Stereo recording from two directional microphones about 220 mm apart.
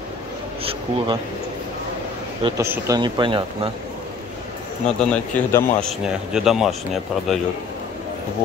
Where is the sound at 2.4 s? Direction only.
15° right (ahead or behind).